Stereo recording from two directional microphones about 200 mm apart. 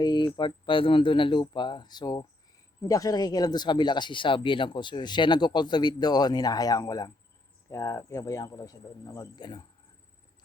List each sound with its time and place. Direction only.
0.0 s speech: 20° left (ahead or behind)